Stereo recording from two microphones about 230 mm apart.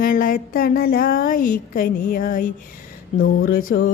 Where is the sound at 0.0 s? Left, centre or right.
Left.